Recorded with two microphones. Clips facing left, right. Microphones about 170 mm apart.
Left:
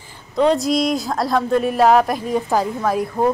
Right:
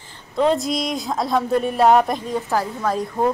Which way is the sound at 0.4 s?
Centre (ahead or behind).